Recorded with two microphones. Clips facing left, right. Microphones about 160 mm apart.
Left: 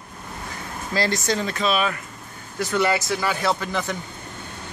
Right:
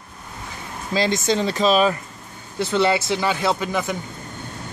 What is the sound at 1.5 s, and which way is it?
Speech, 35° right (ahead or behind).